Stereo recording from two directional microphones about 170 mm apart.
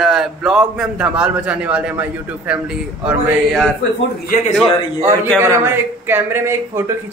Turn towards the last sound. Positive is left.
turn(degrees=-15)  # may be behind; listen again after turning